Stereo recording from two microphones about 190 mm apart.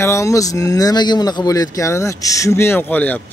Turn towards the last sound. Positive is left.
turn(degrees=10)  # may be behind; listen again after turning